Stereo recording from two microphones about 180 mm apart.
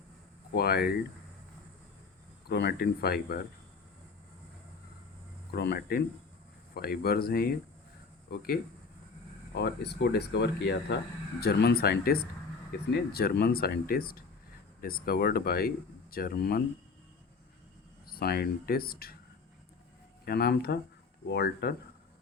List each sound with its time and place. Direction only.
0.5 s speech: 60° left (ahead or behind)
2.5 s speech: 70° left (ahead or behind)
5.5 s speech: 65° left (ahead or behind)
9.6 s speech: 70° left (ahead or behind)
18.1 s speech: 60° left (ahead or behind)
20.2 s speech: 60° left (ahead or behind)